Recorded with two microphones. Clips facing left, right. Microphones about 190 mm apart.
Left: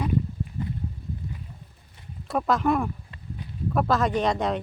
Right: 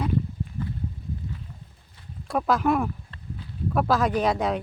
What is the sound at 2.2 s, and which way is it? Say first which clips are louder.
Speech: even; centre (ahead or behind).